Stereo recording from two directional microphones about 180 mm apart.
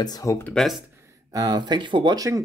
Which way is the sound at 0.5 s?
Centre (ahead or behind).